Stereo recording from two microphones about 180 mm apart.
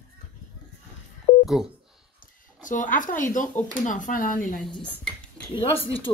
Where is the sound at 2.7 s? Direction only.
45° left (ahead or behind).